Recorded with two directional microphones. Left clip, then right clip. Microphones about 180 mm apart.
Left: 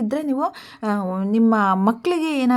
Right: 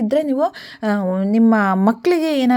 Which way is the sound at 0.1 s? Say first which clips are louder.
Right 7 dB; 20° right (ahead or behind).